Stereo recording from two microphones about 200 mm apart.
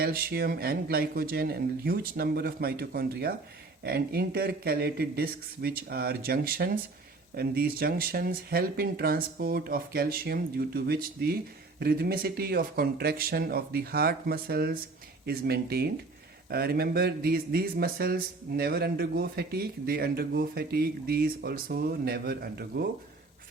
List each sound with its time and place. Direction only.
0.0 s speech: 50° right (ahead or behind)